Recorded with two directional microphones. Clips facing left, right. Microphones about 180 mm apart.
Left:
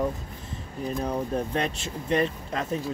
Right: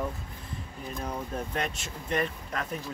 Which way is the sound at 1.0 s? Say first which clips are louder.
Left 5 dB; 35° left (ahead or behind).